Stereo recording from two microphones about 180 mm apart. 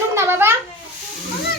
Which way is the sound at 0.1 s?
15° right (ahead or behind).